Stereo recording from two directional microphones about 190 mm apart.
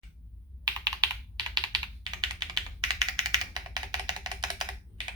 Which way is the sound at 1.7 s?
20° right (ahead or behind).